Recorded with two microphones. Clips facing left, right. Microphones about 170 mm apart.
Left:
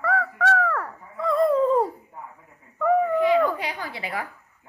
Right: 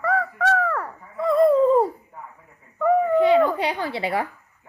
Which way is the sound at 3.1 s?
30° right (ahead or behind).